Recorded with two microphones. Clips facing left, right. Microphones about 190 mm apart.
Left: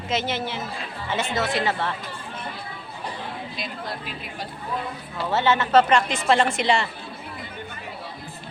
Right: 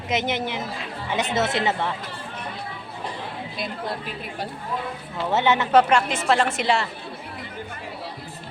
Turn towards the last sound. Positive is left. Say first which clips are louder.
# left 1 dB
turn(degrees=-5)  # may be behind; listen again after turning